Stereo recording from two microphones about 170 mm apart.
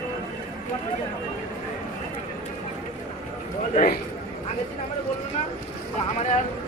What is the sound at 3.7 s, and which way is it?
Speech, 60° left (ahead or behind).